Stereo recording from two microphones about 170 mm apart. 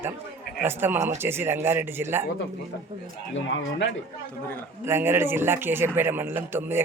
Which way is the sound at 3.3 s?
90° left.